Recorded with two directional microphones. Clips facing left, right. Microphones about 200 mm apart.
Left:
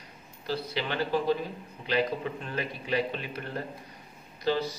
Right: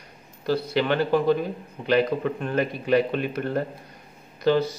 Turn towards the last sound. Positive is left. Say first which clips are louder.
# right 7 dB
turn(degrees=-60)  # may be behind; listen again after turning